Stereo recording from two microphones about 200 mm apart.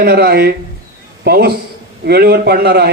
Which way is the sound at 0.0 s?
50° right (ahead or behind).